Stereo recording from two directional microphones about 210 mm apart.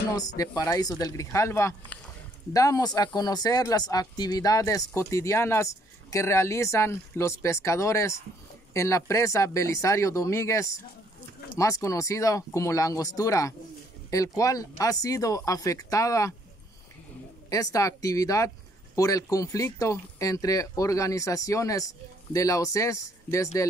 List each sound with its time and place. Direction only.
0.4 s speech: 15° left (ahead or behind)
17.5 s speech: 15° left (ahead or behind)